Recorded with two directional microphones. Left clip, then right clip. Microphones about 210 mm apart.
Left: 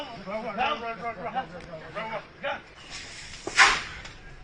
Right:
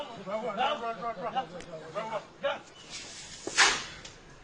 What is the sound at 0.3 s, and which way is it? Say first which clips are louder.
Speech: left 2 dB; 55° right (ahead or behind).